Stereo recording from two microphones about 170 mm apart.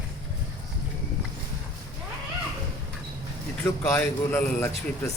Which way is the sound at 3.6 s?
15° left (ahead or behind).